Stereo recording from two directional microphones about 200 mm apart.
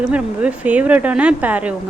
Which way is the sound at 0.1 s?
5° right (ahead or behind).